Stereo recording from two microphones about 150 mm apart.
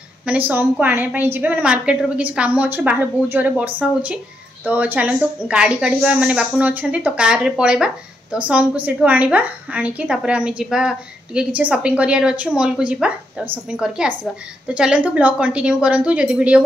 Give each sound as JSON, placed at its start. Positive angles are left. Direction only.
{"t": 0.2, "sound": "a woman's voice", "side_deg": -10}